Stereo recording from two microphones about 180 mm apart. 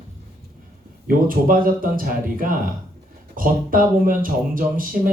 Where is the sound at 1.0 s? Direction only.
50° right (ahead or behind).